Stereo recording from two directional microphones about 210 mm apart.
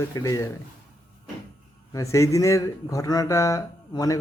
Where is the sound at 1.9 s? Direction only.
15° left (ahead or behind).